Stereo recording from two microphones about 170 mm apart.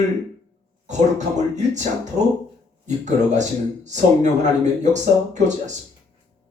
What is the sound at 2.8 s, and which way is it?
Speech, 45° right (ahead or behind).